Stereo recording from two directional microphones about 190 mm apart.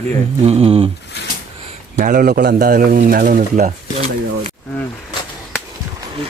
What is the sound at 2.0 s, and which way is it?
Speech, 45° right (ahead or behind).